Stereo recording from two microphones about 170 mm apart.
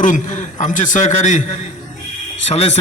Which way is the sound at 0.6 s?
45° left (ahead or behind).